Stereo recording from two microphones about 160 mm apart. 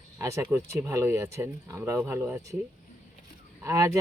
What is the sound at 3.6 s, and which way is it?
Speech, 20° right (ahead or behind).